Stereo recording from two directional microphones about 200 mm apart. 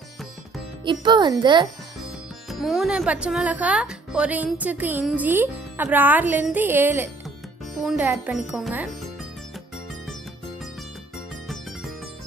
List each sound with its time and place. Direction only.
0.8 s speech: 25° right (ahead or behind)
2.5 s a woman's voice: centre (ahead or behind)